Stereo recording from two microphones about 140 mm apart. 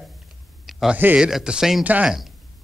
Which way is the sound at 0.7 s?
Centre (ahead or behind).